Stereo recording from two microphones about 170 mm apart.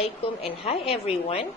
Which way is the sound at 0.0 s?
35° left (ahead or behind).